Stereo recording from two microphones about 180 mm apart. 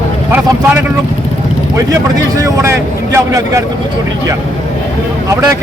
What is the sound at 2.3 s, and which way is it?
Speech, 15° right (ahead or behind).